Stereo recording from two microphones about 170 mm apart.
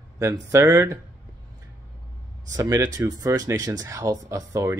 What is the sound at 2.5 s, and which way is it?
Speech, 20° right (ahead or behind).